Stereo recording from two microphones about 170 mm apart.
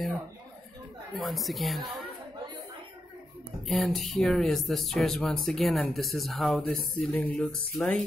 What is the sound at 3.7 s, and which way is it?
Speech, centre (ahead or behind).